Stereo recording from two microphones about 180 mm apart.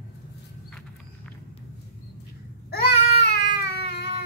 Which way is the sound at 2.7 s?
65° left (ahead or behind).